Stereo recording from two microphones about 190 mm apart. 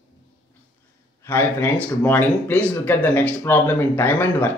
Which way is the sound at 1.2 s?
10° left (ahead or behind).